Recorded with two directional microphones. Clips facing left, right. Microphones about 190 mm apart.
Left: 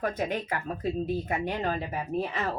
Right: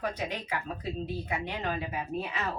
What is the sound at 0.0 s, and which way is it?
Speech, 50° left (ahead or behind).